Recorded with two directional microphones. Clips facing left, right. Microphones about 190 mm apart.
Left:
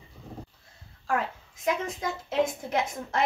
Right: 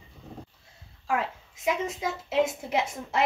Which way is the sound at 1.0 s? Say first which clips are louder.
Even; 5° right (ahead or behind).